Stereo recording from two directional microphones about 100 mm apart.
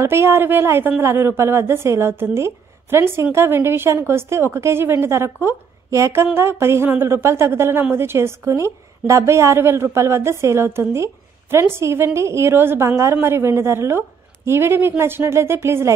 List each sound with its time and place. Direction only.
0.0 s speech: 25° right (ahead or behind)